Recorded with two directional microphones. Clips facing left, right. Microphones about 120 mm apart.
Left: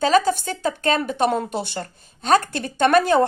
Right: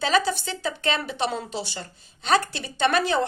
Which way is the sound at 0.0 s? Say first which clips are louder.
Left 5 dB; 45° left (ahead or behind).